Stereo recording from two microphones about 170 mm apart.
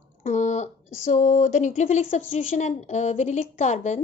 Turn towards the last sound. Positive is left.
turn(degrees=45)  # may be behind; listen again after turning